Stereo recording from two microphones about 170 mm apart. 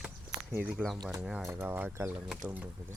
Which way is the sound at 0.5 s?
10° right (ahead or behind).